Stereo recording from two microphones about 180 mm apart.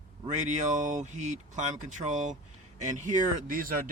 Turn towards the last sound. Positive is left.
turn(degrees=-50)  # may be behind; listen again after turning